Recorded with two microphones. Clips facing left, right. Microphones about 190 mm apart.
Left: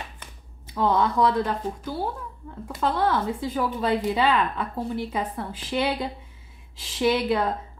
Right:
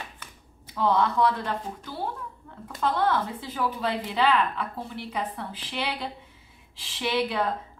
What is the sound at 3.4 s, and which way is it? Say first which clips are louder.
A woman's voice: left 3 dB; 45° left (ahead or behind).